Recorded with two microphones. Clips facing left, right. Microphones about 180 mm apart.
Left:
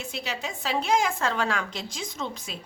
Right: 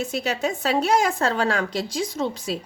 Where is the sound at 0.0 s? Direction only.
45° right (ahead or behind).